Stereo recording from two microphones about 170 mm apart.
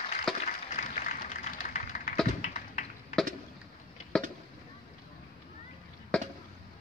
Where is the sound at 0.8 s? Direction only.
45° left (ahead or behind).